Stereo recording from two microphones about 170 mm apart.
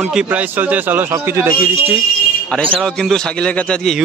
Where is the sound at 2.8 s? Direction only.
5° left (ahead or behind).